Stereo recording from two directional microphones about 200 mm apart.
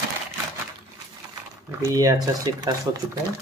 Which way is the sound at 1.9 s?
15° right (ahead or behind).